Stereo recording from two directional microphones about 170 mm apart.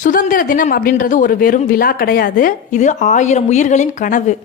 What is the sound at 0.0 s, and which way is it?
A woman's voice, 50° left (ahead or behind).